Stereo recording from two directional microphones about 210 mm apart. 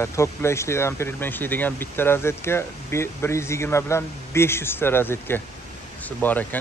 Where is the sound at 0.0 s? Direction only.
15° left (ahead or behind).